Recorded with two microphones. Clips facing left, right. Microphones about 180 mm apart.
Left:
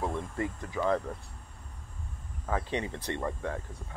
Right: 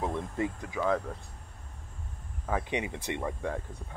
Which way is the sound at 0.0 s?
20° right (ahead or behind).